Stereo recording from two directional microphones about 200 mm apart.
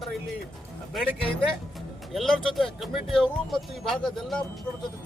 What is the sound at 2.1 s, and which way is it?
Speech, centre (ahead or behind).